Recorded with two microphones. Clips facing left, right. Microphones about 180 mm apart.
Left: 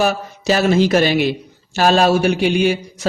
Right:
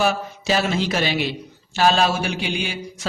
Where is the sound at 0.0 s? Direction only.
45° left (ahead or behind).